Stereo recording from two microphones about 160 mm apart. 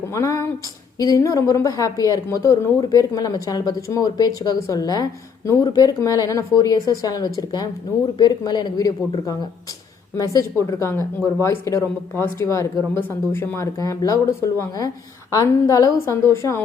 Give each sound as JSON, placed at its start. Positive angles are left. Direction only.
{"t": 0.1, "sound": "a woman's voice", "side_deg": 20}